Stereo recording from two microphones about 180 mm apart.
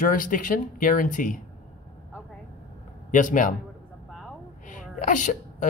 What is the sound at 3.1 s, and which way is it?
Speech, 45° left (ahead or behind).